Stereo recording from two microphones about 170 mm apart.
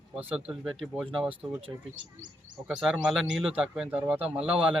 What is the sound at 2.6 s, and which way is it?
Speech, 5° right (ahead or behind).